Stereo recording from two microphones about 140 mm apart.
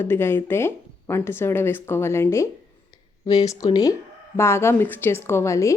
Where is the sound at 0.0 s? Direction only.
15° left (ahead or behind).